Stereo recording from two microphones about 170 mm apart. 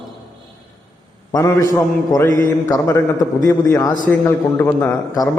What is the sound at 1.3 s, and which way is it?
A man's voice, 20° left (ahead or behind).